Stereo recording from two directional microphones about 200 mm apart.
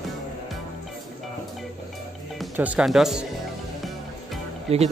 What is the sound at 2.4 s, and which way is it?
Speech, 5° right (ahead or behind).